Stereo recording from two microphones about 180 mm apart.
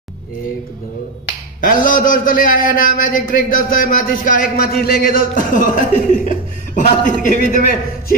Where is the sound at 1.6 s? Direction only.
50° left (ahead or behind).